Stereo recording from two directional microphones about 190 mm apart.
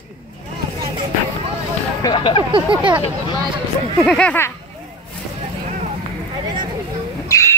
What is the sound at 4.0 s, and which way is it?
Speech, 5° left (ahead or behind).